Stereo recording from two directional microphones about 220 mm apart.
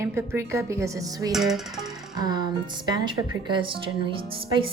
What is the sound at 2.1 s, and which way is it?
A woman's voice, 20° right (ahead or behind).